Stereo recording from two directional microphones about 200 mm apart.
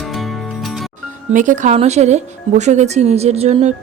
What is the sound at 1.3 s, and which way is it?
Speech, 40° right (ahead or behind).